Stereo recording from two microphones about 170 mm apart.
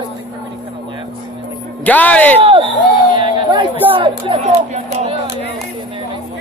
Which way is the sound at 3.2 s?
30° right (ahead or behind).